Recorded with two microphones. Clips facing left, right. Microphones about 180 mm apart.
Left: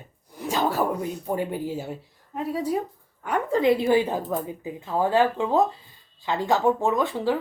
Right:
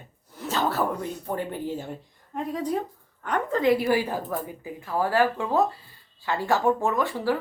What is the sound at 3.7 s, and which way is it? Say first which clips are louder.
Speech: left 2 dB; 25° left (ahead or behind).